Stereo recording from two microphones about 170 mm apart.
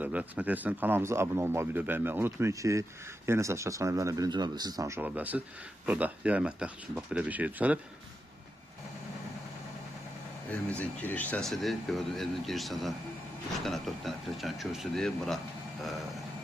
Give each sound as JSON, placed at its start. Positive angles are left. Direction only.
{"t": 0.0, "sound": "speech", "side_deg": -10}
{"t": 10.5, "sound": "speech", "side_deg": 10}